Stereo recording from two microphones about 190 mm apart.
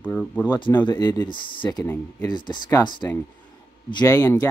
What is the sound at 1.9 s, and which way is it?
Speech, 10° left (ahead or behind).